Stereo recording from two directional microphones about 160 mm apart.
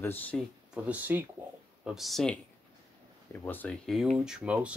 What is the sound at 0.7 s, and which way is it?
Speech, 5° right (ahead or behind).